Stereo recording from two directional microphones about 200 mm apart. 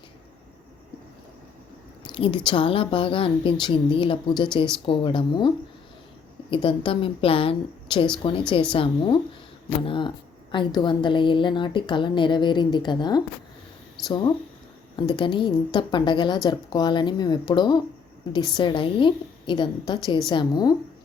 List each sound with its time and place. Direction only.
2.0 s a woman's voice: 25° left (ahead or behind)